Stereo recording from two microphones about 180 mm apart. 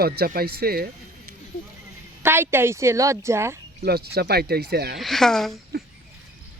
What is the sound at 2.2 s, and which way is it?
Speech, 15° right (ahead or behind).